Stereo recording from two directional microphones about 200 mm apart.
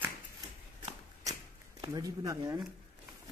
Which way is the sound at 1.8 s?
20° right (ahead or behind).